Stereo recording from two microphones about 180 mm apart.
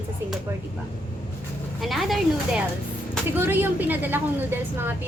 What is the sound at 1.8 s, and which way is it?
A woman's voice, centre (ahead or behind).